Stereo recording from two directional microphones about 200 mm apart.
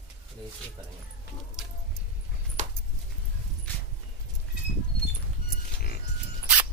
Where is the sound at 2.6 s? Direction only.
35° right (ahead or behind).